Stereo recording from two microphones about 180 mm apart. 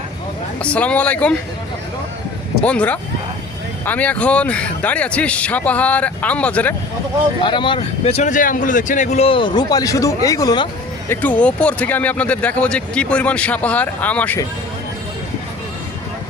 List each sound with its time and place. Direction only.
0.6 s speech: 5° left (ahead or behind)
2.6 s speech: 5° left (ahead or behind)
7.4 s speech: 25° left (ahead or behind)
11.1 s speech: 10° left (ahead or behind)